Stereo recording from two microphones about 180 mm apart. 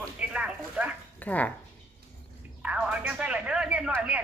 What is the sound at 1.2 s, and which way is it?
Speech, 10° left (ahead or behind).